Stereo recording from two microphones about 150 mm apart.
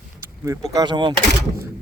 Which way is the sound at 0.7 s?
30° right (ahead or behind).